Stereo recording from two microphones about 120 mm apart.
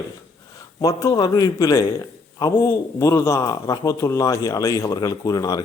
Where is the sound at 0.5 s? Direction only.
30° left (ahead or behind).